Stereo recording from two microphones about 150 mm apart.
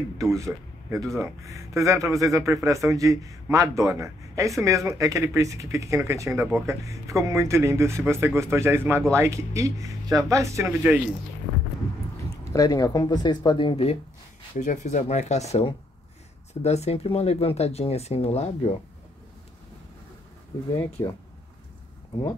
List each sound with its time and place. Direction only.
0.2 s speech: 20° right (ahead or behind)
12.5 s speech: 25° left (ahead or behind)
14.6 s speech: 55° left (ahead or behind)
21.0 s speech: 25° left (ahead or behind)